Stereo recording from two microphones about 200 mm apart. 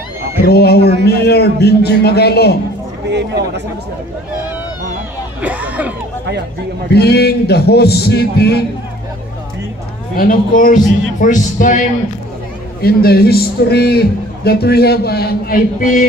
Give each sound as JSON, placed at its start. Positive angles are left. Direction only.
{"t": 0.4, "sound": "a man's voice", "side_deg": 50}
{"t": 3.1, "sound": "speech", "side_deg": -60}
{"t": 5.4, "sound": "speech", "side_deg": -5}
{"t": 6.9, "sound": "a man's voice", "side_deg": 55}
{"t": 10.1, "sound": "a man's voice", "side_deg": 45}
{"t": 12.8, "sound": "a man's voice", "side_deg": 50}